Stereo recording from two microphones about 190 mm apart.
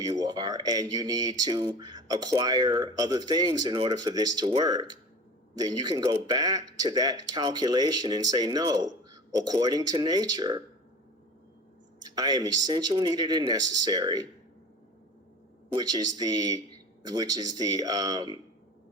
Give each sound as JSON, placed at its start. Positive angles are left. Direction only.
{"t": 0.0, "sound": "speech", "side_deg": -20}
{"t": 12.0, "sound": "speech", "side_deg": -20}
{"t": 15.7, "sound": "speech", "side_deg": -20}